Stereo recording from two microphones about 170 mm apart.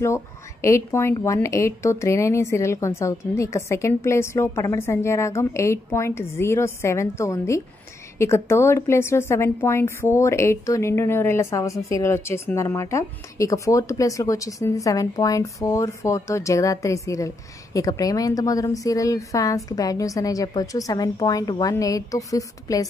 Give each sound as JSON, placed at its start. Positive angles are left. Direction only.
{"t": 0.0, "sound": "a woman's voice", "side_deg": 15}